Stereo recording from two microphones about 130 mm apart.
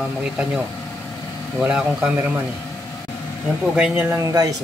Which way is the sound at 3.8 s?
15° right (ahead or behind).